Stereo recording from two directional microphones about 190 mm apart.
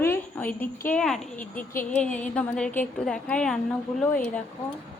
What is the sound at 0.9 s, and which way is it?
A woman's voice, 5° left (ahead or behind).